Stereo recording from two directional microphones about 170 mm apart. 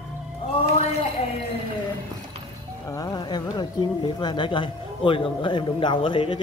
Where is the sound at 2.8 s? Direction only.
20° left (ahead or behind).